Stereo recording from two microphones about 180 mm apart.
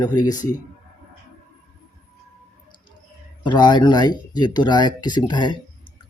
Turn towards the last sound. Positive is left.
turn(degrees=25)  # may be behind; listen again after turning